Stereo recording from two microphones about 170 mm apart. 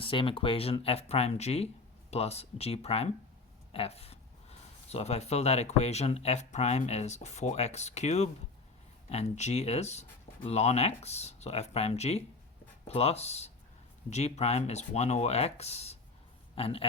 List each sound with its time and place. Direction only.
0.0 s speech: 30° left (ahead or behind)